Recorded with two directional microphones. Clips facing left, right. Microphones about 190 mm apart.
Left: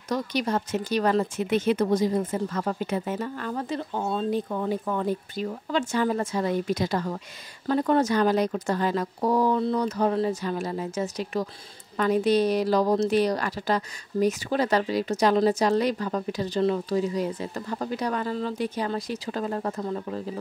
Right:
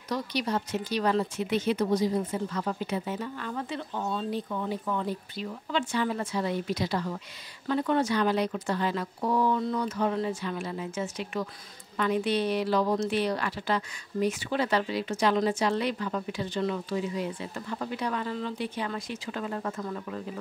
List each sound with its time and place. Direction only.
0.1 s speech: 50° left (ahead or behind)
4.3 s a woman's voice: 50° left (ahead or behind); by 20.2 s 30° left (ahead or behind)